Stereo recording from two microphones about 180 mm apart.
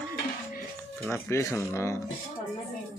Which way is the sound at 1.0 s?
15° left (ahead or behind).